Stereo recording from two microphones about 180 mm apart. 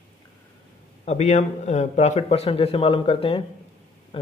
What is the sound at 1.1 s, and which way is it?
Speech, 40° left (ahead or behind).